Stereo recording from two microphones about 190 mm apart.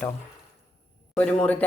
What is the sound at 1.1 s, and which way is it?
Speech, 5° left (ahead or behind).